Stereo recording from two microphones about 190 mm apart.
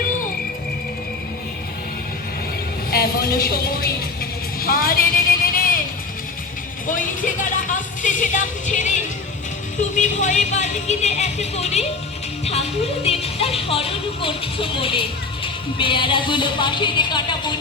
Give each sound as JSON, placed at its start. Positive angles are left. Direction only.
{"t": 2.9, "sound": "speech", "side_deg": 55}
{"t": 6.8, "sound": "speech", "side_deg": 45}